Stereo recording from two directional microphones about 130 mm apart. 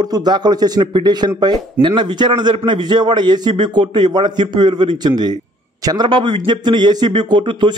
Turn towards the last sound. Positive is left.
turn(degrees=-35)  # may be behind; listen again after turning